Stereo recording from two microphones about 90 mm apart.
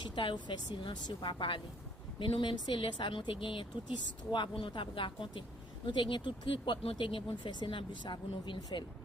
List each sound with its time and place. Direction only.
0.0 s speech: 60° left (ahead or behind)